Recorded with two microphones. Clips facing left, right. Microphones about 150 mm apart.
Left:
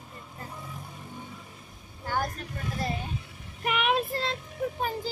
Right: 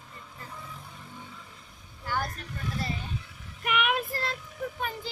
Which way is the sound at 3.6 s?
35° left (ahead or behind).